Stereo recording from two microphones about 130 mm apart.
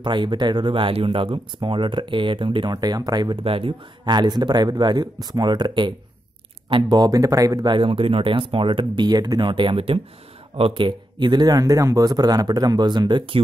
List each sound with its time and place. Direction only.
0.0 s speech: 35° right (ahead or behind)